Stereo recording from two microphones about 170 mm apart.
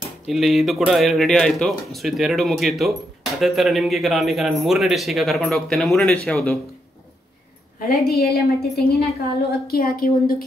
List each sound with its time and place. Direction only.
0.3 s speech: centre (ahead or behind)
8.1 s a woman's voice: 65° left (ahead or behind)